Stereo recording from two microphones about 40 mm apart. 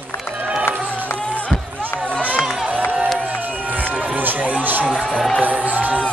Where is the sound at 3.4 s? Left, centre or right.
Right.